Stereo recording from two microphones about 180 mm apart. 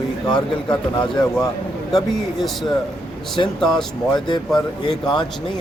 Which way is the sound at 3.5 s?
Centre (ahead or behind).